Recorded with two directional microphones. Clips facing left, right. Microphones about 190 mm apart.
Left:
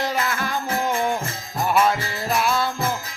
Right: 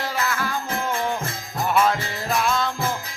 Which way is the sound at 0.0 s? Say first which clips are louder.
Left 2 dB; 20° left (ahead or behind).